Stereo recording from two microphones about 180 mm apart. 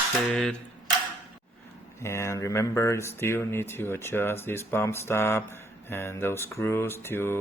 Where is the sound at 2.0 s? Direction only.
15° left (ahead or behind).